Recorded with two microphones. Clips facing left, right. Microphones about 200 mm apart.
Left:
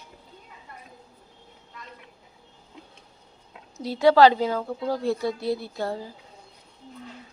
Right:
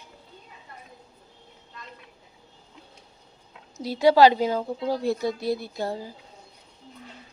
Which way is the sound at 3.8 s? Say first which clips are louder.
Even; 15° right (ahead or behind).